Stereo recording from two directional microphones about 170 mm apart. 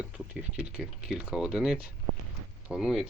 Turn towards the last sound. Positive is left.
turn(degrees=-5)  # may be behind; listen again after turning